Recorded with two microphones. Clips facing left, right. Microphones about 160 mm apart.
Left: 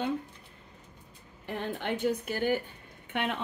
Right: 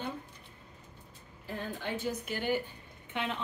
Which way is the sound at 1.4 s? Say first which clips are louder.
Left 4 dB; 70° left (ahead or behind).